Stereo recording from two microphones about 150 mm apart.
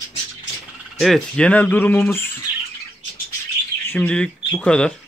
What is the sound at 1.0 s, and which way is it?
Speech, 5° left (ahead or behind).